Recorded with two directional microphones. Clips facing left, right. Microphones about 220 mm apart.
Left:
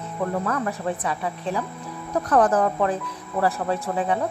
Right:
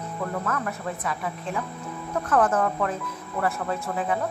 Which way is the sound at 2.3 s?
35° left (ahead or behind).